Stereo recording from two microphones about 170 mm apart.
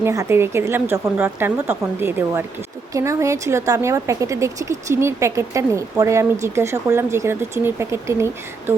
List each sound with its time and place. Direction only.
0.0 s speech: 15° right (ahead or behind)